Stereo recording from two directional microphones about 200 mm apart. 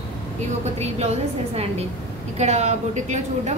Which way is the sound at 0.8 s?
30° right (ahead or behind).